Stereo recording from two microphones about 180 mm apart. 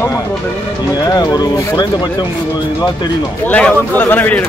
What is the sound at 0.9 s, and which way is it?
Speech, 20° left (ahead or behind).